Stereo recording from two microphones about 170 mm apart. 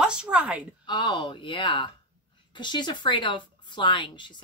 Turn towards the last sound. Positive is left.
turn(degrees=30)  # may be behind; listen again after turning